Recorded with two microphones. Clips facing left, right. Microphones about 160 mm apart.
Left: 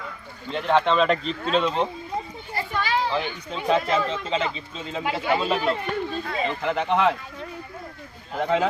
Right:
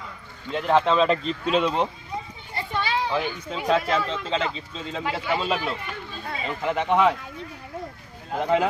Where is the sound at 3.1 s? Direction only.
Centre (ahead or behind).